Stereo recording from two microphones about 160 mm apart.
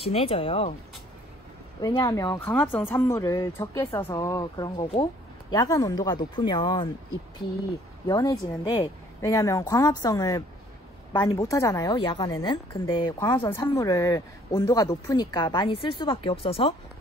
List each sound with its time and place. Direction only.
0.0 s speech: 35° left (ahead or behind)
1.8 s speech: 25° left (ahead or behind)
2.5 s speech: 10° left (ahead or behind); by 6.9 s 30° left (ahead or behind)
8.1 s speech: 20° left (ahead or behind)